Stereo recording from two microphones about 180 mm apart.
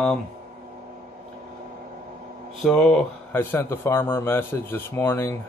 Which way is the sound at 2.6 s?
5° left (ahead or behind).